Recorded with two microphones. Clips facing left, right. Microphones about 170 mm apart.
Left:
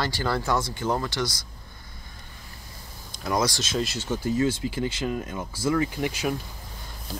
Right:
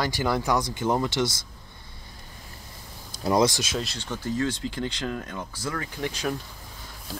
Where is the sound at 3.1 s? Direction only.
30° right (ahead or behind).